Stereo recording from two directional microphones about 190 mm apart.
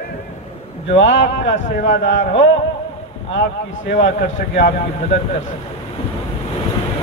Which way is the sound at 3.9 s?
75° left (ahead or behind).